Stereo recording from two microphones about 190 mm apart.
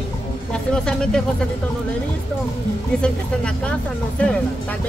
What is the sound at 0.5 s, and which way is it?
Speech, 5° left (ahead or behind).